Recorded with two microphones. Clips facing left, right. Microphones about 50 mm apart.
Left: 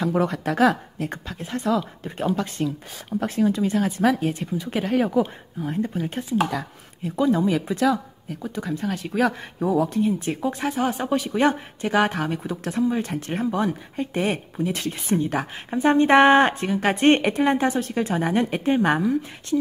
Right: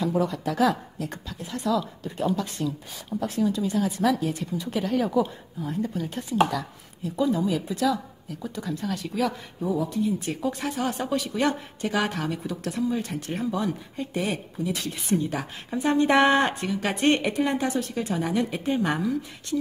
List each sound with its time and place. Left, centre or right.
0.0 s a woman's voice: left
7.7 s a woman's voice: left
9.6 s a woman's voice: left
18.9 s a woman's voice: left